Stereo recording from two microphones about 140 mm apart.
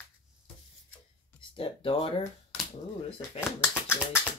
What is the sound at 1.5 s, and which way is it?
Speech, 40° left (ahead or behind).